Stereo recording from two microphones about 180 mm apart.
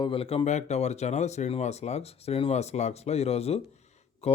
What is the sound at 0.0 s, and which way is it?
Speech, 30° left (ahead or behind).